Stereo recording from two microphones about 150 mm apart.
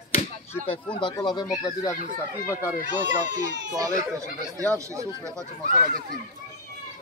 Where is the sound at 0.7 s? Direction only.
35° left (ahead or behind).